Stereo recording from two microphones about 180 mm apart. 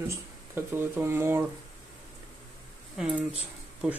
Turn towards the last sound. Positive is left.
turn(degrees=-5)  # may be behind; listen again after turning